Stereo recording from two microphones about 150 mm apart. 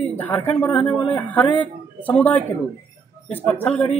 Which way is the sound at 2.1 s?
10° left (ahead or behind).